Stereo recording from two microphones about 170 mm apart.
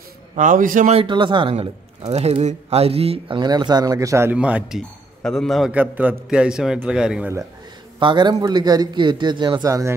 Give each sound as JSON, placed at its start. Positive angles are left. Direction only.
{"t": 0.4, "sound": "speech", "side_deg": -50}
{"t": 0.9, "sound": "speech", "side_deg": -30}
{"t": 8.0, "sound": "a man's voice", "side_deg": -25}